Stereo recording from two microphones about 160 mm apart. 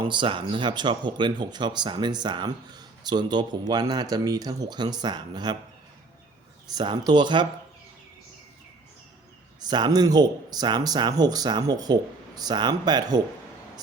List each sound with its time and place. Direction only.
0.0 s speech: 30° right (ahead or behind)
6.7 s speech: 25° right (ahead or behind)
9.6 s speech: 25° right (ahead or behind)